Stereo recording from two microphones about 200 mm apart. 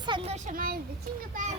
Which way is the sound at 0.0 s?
25° right (ahead or behind).